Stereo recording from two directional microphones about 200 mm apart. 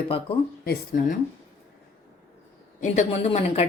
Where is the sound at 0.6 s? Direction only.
50° left (ahead or behind).